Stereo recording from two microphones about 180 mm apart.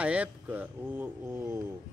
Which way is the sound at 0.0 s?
5° right (ahead or behind).